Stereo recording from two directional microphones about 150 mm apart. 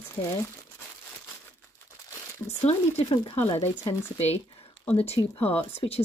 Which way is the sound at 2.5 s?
45° left (ahead or behind).